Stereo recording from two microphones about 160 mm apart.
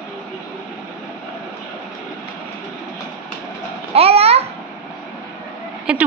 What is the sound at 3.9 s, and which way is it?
Babbling, 40° right (ahead or behind).